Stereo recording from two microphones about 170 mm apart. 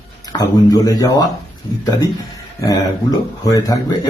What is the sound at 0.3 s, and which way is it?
Speech, 20° left (ahead or behind).